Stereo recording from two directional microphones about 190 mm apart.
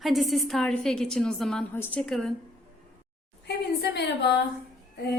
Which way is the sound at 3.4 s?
60° left (ahead or behind).